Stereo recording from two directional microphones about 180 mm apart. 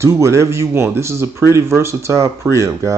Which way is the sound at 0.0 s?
15° right (ahead or behind).